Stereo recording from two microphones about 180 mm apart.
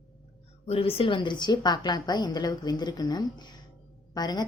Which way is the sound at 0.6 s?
35° left (ahead or behind).